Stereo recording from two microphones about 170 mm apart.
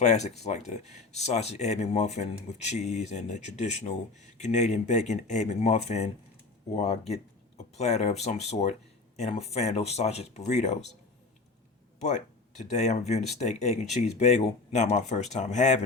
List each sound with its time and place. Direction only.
0.0 s speech: 40° left (ahead or behind)
11.9 s speech: 45° left (ahead or behind)